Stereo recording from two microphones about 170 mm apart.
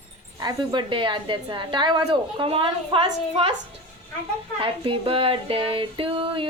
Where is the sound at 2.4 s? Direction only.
30° right (ahead or behind).